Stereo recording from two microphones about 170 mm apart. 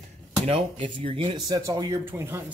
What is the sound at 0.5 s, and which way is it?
Speech, 35° right (ahead or behind).